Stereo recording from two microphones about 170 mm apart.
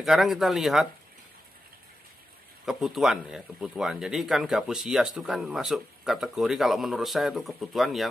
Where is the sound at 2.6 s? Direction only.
Centre (ahead or behind).